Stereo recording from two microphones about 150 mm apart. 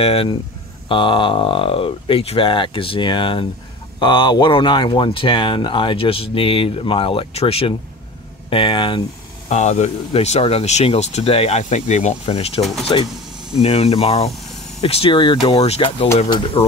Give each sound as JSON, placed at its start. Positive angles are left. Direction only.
{"t": 0.0, "sound": "speech", "side_deg": 40}
{"t": 9.5, "sound": "speech", "side_deg": 50}